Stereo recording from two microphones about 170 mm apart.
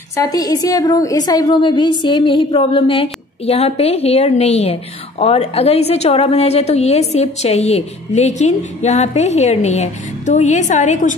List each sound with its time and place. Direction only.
0.1 s a woman's voice: 20° left (ahead or behind); by 11.1 s 45° left (ahead or behind)